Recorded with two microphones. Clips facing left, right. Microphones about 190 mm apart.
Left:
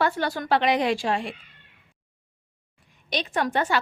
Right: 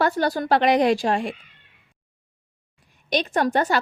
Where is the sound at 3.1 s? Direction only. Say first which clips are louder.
Right 4 dB; 45° right (ahead or behind).